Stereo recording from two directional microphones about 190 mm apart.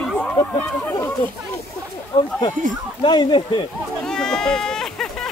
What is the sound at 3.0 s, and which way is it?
Speech, 25° left (ahead or behind).